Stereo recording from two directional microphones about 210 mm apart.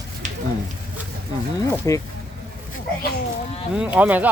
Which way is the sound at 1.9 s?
15° left (ahead or behind).